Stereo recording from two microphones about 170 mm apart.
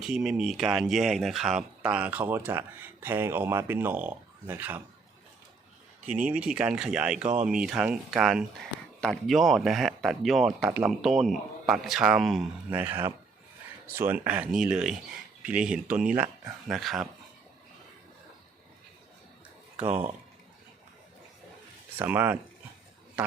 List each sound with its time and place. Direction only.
0.0 s speech: 5° right (ahead or behind)
6.1 s speech: 5° right (ahead or behind)
7.2 s speech: 45° right (ahead or behind)
7.4 s speech: 5° right (ahead or behind)
12.7 s speech: 10° right (ahead or behind)
19.8 s speech: 40° right (ahead or behind)
21.9 s speech: 10° right (ahead or behind)